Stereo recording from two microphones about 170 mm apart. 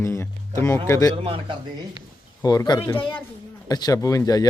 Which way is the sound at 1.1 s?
35° right (ahead or behind).